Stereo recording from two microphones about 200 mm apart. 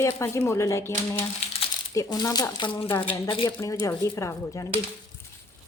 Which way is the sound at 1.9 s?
20° left (ahead or behind).